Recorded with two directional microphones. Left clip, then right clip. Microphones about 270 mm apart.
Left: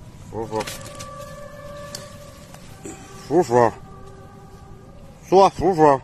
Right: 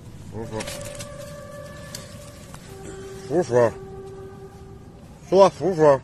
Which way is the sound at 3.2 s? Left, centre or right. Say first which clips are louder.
Left 3 dB; left.